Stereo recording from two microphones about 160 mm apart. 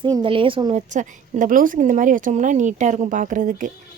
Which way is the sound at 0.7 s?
50° right (ahead or behind).